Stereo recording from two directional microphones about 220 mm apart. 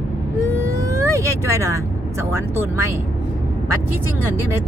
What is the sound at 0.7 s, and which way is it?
Speech, 15° right (ahead or behind).